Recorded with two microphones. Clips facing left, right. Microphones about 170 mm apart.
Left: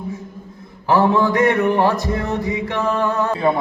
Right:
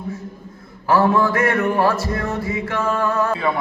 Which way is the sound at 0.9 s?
20° left (ahead or behind).